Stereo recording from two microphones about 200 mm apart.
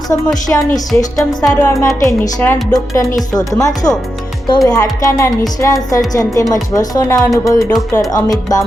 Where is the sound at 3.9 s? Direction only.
Centre (ahead or behind).